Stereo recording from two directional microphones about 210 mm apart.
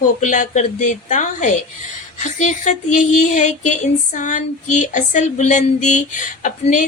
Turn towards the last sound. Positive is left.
turn(degrees=35)  # may be behind; listen again after turning